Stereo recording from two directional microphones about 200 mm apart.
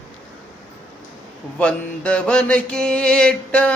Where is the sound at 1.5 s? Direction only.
5° left (ahead or behind).